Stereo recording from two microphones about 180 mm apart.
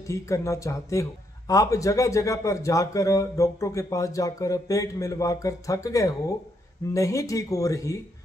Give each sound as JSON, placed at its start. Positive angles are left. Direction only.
{"t": 0.0, "sound": "speech", "side_deg": 15}